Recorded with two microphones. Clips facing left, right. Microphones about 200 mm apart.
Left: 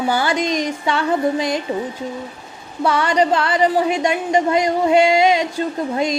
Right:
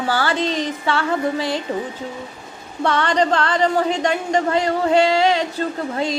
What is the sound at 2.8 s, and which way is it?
A woman's voice, 10° left (ahead or behind).